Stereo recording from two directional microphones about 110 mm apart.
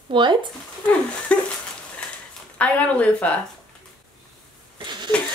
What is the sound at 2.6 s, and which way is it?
Speech, 10° left (ahead or behind).